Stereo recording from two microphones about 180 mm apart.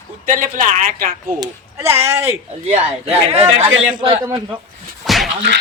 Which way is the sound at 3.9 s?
30° right (ahead or behind).